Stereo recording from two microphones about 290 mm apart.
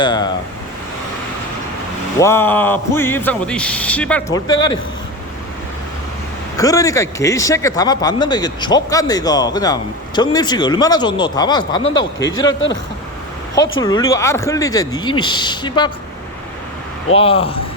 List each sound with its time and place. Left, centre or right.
0.0 s speech: centre
2.1 s speech: centre
6.6 s speech: centre
13.8 s speech: centre
17.2 s speech: centre